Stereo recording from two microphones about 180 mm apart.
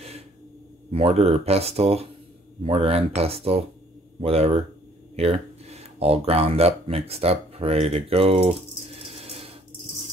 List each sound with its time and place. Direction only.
0.9 s speech: 35° right (ahead or behind)